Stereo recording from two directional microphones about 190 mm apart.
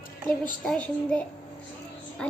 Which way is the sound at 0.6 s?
5° left (ahead or behind).